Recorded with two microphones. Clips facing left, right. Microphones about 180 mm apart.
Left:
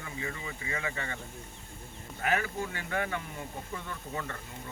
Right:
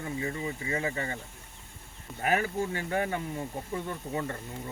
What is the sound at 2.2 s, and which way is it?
Speech, 35° right (ahead or behind).